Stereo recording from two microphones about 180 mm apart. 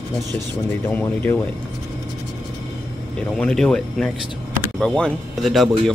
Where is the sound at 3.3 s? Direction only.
5° left (ahead or behind).